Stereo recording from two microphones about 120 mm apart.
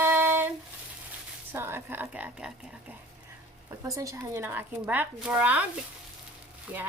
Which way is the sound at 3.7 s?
25° right (ahead or behind).